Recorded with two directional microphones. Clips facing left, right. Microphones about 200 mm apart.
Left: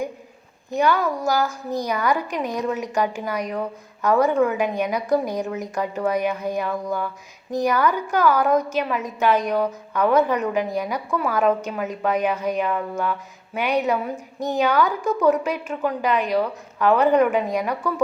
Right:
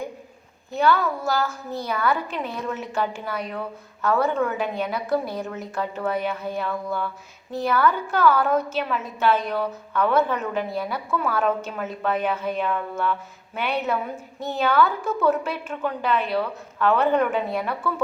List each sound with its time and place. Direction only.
0.7 s a woman's voice: 15° left (ahead or behind)
17.1 s a woman's voice: centre (ahead or behind)
17.3 s a woman's voice: 15° left (ahead or behind)